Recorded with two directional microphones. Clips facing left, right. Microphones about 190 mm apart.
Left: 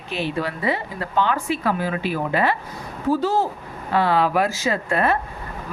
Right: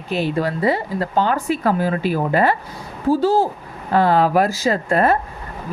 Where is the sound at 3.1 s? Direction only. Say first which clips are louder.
Right 4 dB; 30° right (ahead or behind).